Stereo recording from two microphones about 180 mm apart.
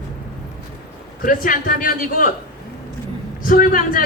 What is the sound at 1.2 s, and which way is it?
A man's voice, 50° left (ahead or behind).